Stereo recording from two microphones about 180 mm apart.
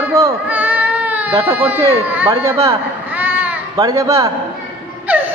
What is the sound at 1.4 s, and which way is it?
Speech, 10° right (ahead or behind).